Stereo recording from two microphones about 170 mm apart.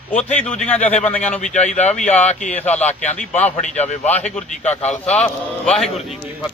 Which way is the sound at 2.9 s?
45° left (ahead or behind).